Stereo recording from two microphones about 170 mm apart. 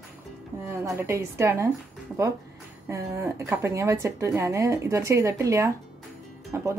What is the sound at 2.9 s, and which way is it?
Speech, 15° right (ahead or behind).